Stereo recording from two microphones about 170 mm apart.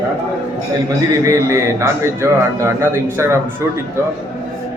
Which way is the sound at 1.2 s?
20° right (ahead or behind).